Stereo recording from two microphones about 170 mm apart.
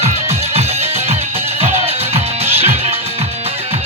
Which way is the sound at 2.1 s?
35° right (ahead or behind).